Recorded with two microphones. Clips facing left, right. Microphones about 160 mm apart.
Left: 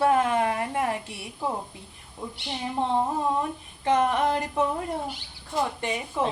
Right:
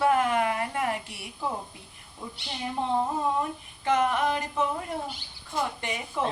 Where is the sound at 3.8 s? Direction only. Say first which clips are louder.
Left 2 dB; 30° left (ahead or behind).